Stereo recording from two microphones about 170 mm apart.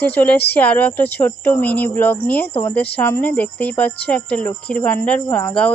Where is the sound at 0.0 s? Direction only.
10° left (ahead or behind).